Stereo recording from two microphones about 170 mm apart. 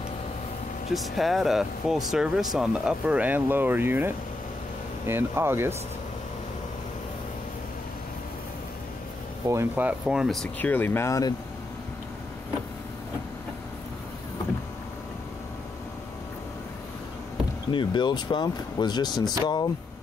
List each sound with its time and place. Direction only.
0.9 s speech: centre (ahead or behind)
9.5 s speech: 15° right (ahead or behind); by 11.3 s 20° left (ahead or behind)
17.6 s speech: 30° left (ahead or behind)